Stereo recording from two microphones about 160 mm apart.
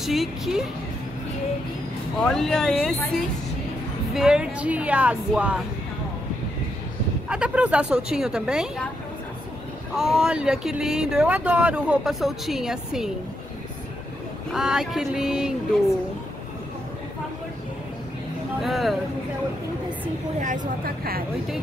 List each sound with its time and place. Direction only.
0.0 s speech: centre (ahead or behind)
2.1 s speech: 5° left (ahead or behind)
7.2 s speech: 5° right (ahead or behind)
9.9 s speech: 5° right (ahead or behind)
14.5 s speech: 5° right (ahead or behind)
18.6 s speech: centre (ahead or behind)
20.3 s a woman's voice: 50° right (ahead or behind); by 21.2 s 70° right (ahead or behind)